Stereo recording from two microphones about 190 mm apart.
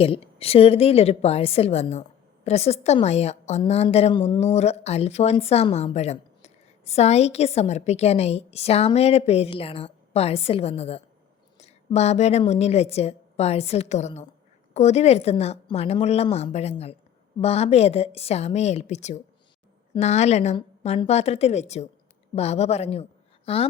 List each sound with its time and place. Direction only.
0.0 s a woman's voice: 30° left (ahead or behind)